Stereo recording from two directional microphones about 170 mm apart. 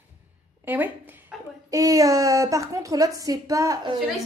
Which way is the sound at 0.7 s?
10° right (ahead or behind).